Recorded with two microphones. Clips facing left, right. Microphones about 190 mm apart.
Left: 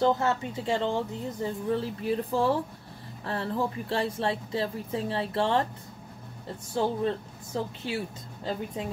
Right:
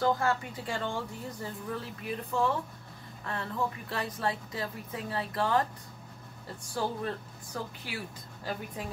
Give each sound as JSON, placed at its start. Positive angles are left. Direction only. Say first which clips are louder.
{"t": 0.0, "sound": "speech", "louder": "left 3 dB", "side_deg": 25}
{"t": 6.7, "sound": "speech", "louder": "left 6 dB", "side_deg": 25}